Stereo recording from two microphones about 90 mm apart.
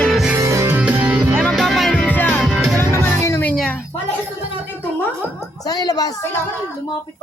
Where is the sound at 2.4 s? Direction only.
5° right (ahead or behind).